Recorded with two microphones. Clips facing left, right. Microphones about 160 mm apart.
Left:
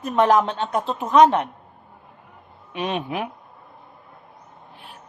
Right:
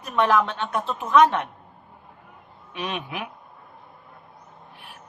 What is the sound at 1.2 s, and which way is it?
Speech, 25° left (ahead or behind).